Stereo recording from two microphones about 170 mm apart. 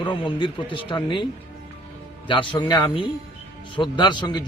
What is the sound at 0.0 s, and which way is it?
Speech, 30° left (ahead or behind).